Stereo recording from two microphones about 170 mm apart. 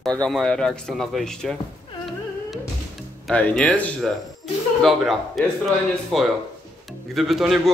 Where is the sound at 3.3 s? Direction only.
5° left (ahead or behind).